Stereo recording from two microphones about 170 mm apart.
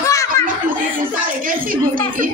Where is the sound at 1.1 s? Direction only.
55° right (ahead or behind).